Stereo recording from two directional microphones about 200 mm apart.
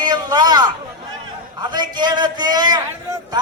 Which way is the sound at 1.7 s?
20° right (ahead or behind).